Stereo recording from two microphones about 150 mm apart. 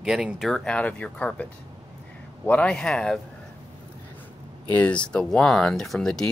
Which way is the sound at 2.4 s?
10° left (ahead or behind).